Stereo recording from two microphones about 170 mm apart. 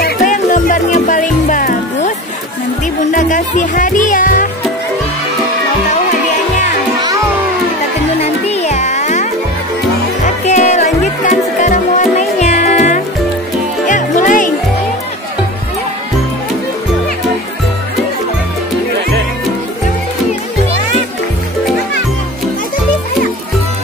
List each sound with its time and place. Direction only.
0.0 s music: 50° left (ahead or behind)
3.0 s speech: 50° left (ahead or behind)
8.2 s music: 40° left (ahead or behind)